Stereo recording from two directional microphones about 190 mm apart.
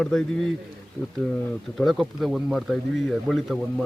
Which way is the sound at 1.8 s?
Centre (ahead or behind).